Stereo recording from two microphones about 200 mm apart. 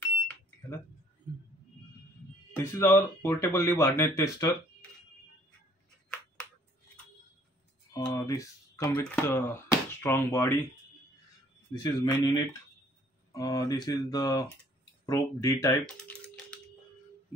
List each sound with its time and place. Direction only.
2.5 s speech: 10° left (ahead or behind)
7.9 s speech: 15° left (ahead or behind)
11.8 s a man's voice: 20° left (ahead or behind)
15.8 s typing: 5° left (ahead or behind)